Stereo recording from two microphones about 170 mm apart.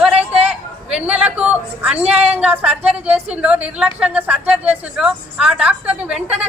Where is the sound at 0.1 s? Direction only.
35° right (ahead or behind).